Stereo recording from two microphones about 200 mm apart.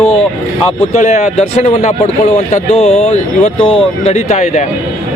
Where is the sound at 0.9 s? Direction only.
35° left (ahead or behind).